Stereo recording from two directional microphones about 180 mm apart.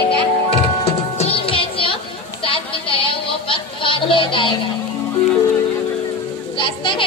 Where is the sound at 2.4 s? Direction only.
30° left (ahead or behind).